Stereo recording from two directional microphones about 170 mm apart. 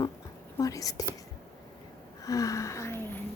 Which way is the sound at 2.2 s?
20° left (ahead or behind).